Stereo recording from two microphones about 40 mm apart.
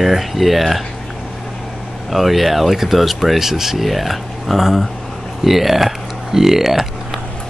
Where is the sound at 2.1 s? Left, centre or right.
Centre.